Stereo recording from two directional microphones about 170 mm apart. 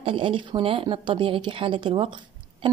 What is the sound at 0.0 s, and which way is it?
Speech, 30° right (ahead or behind).